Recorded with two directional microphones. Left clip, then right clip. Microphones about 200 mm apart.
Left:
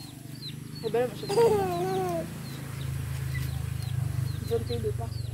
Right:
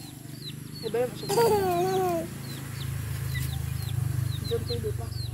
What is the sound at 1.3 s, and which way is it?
Chicken, 25° right (ahead or behind).